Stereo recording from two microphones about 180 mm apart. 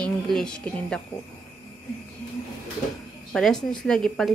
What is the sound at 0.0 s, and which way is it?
Speech, 5° left (ahead or behind).